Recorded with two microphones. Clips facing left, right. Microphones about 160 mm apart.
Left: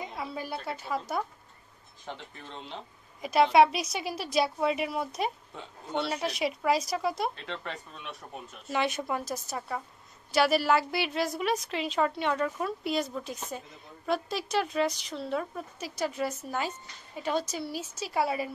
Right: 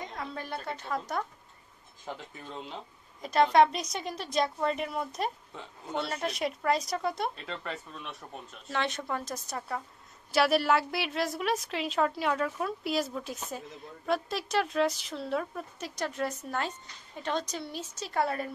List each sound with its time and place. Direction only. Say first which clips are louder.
0.0 s a woman's voice: left 2 dB; 5° left (ahead or behind)
2.0 s a woman's voice: right 1 dB; 5° right (ahead or behind)
3.2 s a woman's voice: left 1 dB; 10° left (ahead or behind)
8.6 s a woman's voice: left 3 dB; 10° left (ahead or behind)